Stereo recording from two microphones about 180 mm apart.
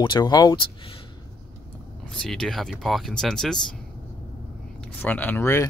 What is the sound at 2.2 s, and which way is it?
Speech, centre (ahead or behind).